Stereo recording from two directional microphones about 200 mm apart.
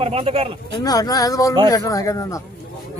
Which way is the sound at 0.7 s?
20° left (ahead or behind).